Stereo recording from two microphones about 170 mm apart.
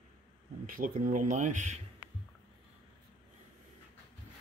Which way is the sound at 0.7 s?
55° right (ahead or behind).